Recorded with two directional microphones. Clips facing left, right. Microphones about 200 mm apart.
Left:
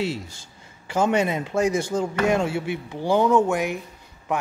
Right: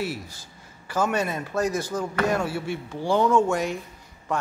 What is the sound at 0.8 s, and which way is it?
A man's voice, 25° left (ahead or behind).